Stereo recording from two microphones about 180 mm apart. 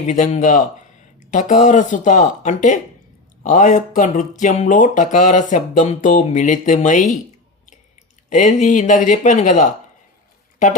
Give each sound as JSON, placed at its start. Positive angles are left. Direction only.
{"t": 0.1, "sound": "speech", "side_deg": 45}
{"t": 8.3, "sound": "speech", "side_deg": 45}